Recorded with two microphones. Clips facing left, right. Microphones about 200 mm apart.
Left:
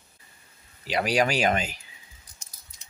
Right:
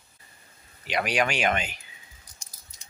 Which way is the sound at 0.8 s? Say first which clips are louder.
Left 2 dB; 35° left (ahead or behind).